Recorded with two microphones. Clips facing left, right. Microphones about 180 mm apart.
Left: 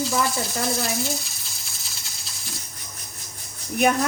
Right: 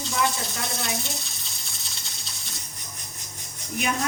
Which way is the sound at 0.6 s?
Centre (ahead or behind).